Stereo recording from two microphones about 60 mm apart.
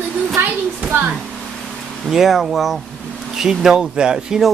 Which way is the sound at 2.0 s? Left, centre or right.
Centre.